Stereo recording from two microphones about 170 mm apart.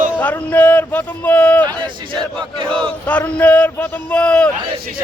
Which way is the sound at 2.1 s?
30° right (ahead or behind).